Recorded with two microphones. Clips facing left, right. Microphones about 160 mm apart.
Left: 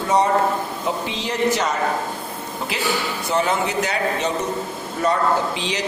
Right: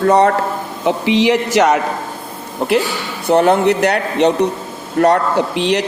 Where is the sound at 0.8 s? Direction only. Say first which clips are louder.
Right 14 dB; 90° right.